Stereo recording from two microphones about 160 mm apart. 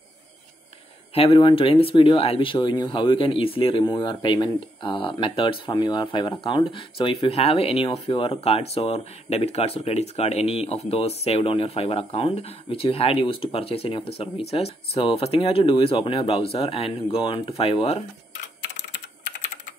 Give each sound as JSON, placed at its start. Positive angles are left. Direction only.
{"t": 1.1, "sound": "speech", "side_deg": 35}